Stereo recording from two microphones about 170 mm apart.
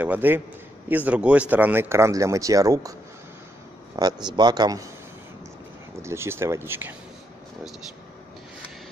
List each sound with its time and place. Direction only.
0.0 s a man's voice: 10° right (ahead or behind)
6.0 s speech: 15° right (ahead or behind)